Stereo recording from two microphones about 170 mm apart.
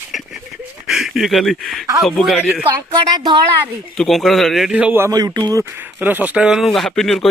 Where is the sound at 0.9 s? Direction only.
Centre (ahead or behind).